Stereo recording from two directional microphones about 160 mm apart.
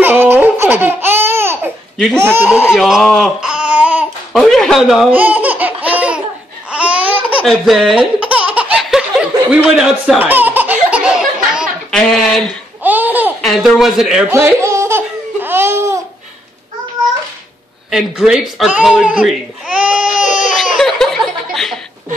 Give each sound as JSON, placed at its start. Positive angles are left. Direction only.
{"t": 0.0, "sound": "laughter", "side_deg": -10}
{"t": 2.1, "sound": "speech", "side_deg": -15}
{"t": 2.7, "sound": "speech", "side_deg": 0}
{"t": 5.2, "sound": "laughter", "side_deg": -10}
{"t": 9.5, "sound": "belly laugh", "side_deg": -5}
{"t": 12.8, "sound": "laughter", "side_deg": -10}
{"t": 13.4, "sound": "speech", "side_deg": 0}
{"t": 14.3, "sound": "laughter", "side_deg": -15}
{"t": 17.9, "sound": "speech", "side_deg": -5}
{"t": 19.8, "sound": "baby cry", "side_deg": -10}
{"t": 20.2, "sound": "baby cry", "side_deg": 50}
{"t": 20.5, "sound": "laughter", "side_deg": 0}